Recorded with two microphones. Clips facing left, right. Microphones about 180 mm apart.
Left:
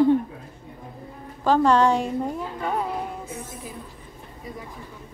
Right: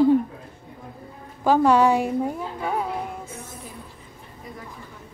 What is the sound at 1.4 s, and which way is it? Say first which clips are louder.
A woman's voice: right 1 dB; 10° right (ahead or behind).